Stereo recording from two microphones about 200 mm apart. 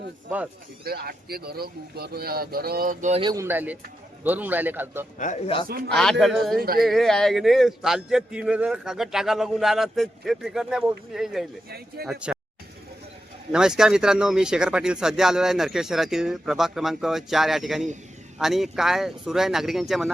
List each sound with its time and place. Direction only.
0.9 s speech: 50° right (ahead or behind)
3.2 s speech: 20° right (ahead or behind)
3.4 s a man's voice: 10° right (ahead or behind)
5.1 s speech: 40° left (ahead or behind)
5.9 s speech: centre (ahead or behind)
6.6 s speech: 50° right (ahead or behind)
6.8 s speech: centre (ahead or behind)
12.0 s speech: 50° right (ahead or behind)
13.5 s speech: 5° right (ahead or behind)